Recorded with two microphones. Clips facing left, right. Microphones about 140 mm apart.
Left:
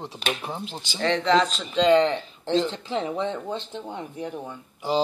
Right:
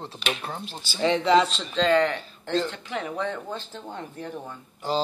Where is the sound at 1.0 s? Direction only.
5° right (ahead or behind).